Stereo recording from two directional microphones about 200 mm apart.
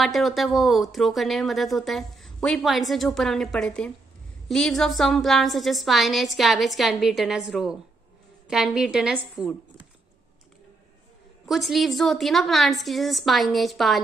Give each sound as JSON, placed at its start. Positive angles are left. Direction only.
{"t": 0.0, "sound": "speech", "side_deg": 0}
{"t": 11.4, "sound": "speech", "side_deg": 0}